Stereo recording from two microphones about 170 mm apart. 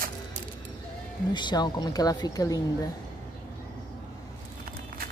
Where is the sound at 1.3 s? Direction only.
25° left (ahead or behind).